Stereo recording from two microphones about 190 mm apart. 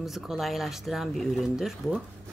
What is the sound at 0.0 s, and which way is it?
Speech, centre (ahead or behind).